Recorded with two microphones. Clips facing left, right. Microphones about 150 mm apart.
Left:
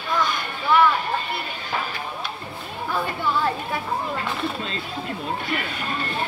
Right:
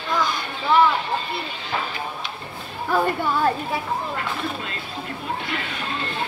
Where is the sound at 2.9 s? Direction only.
40° right (ahead or behind).